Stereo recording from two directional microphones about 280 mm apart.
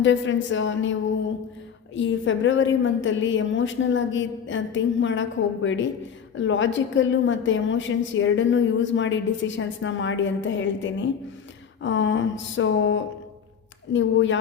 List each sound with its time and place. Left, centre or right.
0.0 s a woman's voice: left
2.0 s a woman's voice: left